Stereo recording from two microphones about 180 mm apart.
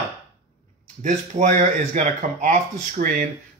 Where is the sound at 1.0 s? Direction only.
45° right (ahead or behind).